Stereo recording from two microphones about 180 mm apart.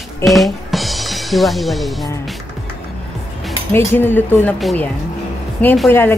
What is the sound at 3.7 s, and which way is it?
Speech, 10° left (ahead or behind).